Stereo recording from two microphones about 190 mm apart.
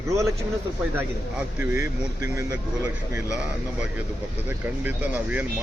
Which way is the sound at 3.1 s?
5° right (ahead or behind).